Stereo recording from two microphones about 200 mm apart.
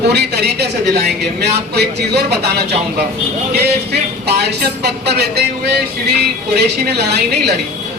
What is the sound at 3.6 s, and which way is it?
A man's voice, 55° right (ahead or behind).